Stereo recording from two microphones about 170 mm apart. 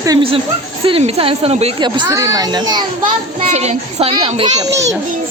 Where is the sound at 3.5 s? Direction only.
40° right (ahead or behind).